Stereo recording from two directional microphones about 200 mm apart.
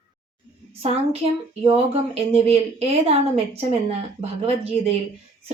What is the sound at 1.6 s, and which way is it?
A woman's voice, 30° right (ahead or behind).